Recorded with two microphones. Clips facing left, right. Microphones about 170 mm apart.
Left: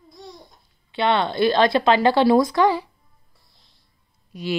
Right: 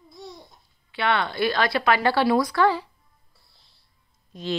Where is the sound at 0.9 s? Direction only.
25° left (ahead or behind).